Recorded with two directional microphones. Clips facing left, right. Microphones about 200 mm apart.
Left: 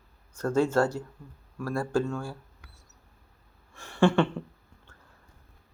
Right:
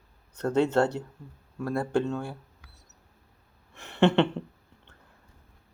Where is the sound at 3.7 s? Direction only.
20° right (ahead or behind).